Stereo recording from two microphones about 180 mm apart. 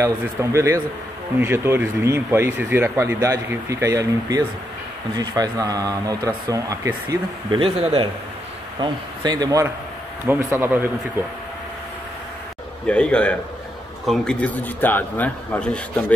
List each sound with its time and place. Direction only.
0.0 s speech: 15° right (ahead or behind)
7.5 s a man's voice: 30° right (ahead or behind); by 11.2 s 10° right (ahead or behind)
12.8 s a man's voice: 5° left (ahead or behind)